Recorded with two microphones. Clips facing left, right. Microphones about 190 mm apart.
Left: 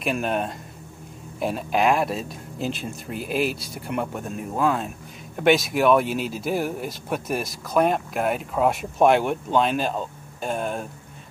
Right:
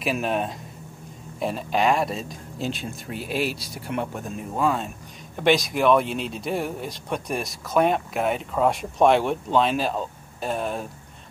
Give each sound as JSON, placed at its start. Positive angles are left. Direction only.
{"t": 0.0, "sound": "speech", "side_deg": 0}